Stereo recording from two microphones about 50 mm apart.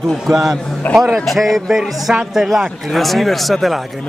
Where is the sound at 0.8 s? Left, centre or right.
Left.